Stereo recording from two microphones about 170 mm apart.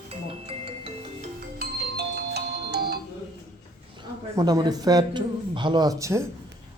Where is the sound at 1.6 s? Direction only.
75° right (ahead or behind).